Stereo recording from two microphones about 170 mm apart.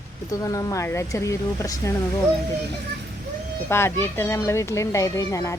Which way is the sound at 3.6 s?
15° left (ahead or behind).